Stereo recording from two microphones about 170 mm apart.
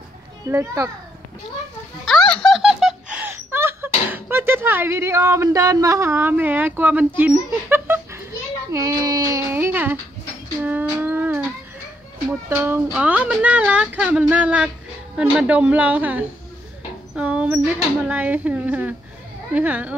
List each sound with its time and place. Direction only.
0.5 s speech: 15° right (ahead or behind)
2.0 s giggle: 5° left (ahead or behind)
7.2 s dog: 10° right (ahead or behind)
8.7 s a sound: 20° right (ahead or behind)
12.4 s speech: 15° right (ahead or behind)
17.1 s dog: 5° right (ahead or behind)
18.0 s speech: 10° right (ahead or behind)